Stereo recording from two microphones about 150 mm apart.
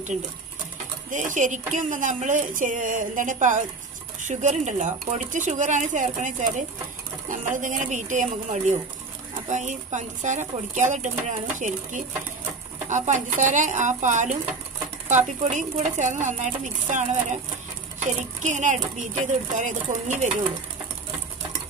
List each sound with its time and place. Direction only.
1.1 s a woman's voice: 55° right (ahead or behind)
18.4 s a woman's voice: 55° right (ahead or behind)